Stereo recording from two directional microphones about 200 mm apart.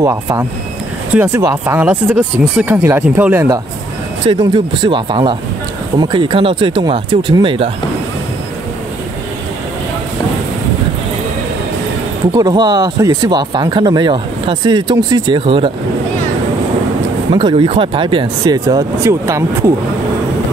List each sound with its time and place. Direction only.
0.0 s speech: 10° right (ahead or behind)
4.3 s speech: 25° right (ahead or behind)
12.3 s speech: 20° right (ahead or behind)
17.3 s speech: 25° right (ahead or behind)